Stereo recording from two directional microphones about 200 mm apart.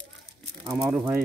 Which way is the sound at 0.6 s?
15° right (ahead or behind).